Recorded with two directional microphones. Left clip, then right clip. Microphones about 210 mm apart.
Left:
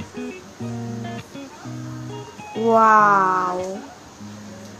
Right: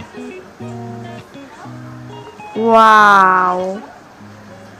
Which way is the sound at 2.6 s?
30° right (ahead or behind).